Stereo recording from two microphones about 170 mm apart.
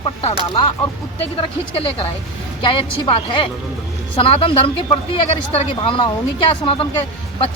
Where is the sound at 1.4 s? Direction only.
30° left (ahead or behind).